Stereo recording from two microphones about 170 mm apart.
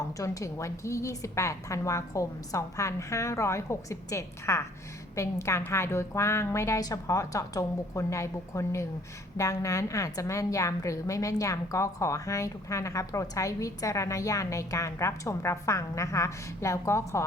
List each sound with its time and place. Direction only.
0.2 s a woman's voice: 20° left (ahead or behind)